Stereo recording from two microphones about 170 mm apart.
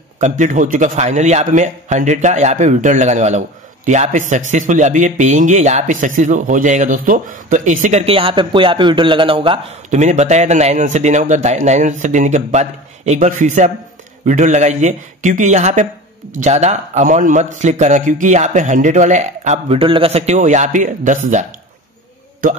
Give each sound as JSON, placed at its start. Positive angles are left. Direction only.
{"t": 0.2, "sound": "a man's voice", "side_deg": -45}
{"t": 9.8, "sound": "a man's voice", "side_deg": -45}